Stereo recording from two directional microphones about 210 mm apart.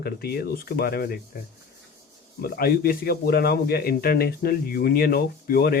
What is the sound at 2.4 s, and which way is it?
A man's voice, 45° left (ahead or behind).